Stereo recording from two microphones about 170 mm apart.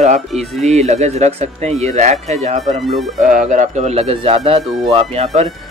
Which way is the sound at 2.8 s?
Centre (ahead or behind).